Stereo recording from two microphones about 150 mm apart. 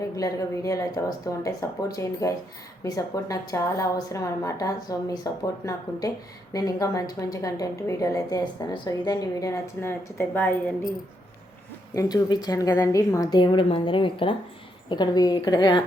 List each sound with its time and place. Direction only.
0.2 s speech: 20° left (ahead or behind)
11.9 s speech: 25° left (ahead or behind)
13.3 s speech: 30° left (ahead or behind)